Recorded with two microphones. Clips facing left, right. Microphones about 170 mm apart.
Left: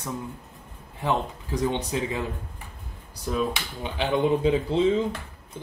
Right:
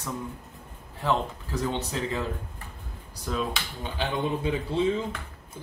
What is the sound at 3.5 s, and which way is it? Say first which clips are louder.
Speech: left 2 dB; 20° left (ahead or behind).